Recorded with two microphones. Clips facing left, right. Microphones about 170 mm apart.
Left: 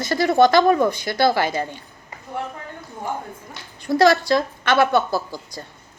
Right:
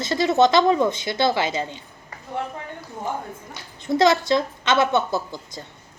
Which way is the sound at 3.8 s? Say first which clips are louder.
Left 2 dB; 20° right (ahead or behind).